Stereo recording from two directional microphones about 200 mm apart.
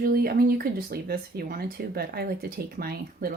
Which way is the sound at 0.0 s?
50° right (ahead or behind).